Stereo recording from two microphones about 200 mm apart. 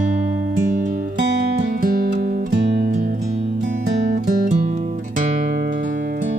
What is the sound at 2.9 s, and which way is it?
Music, 40° right (ahead or behind).